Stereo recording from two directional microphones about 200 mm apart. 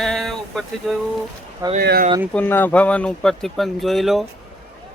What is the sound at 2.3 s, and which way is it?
Speech, 10° left (ahead or behind).